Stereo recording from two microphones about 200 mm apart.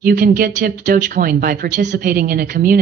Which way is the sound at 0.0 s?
45° right (ahead or behind).